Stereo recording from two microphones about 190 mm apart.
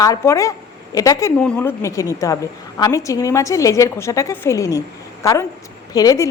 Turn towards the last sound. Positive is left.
turn(degrees=20)  # may be behind; listen again after turning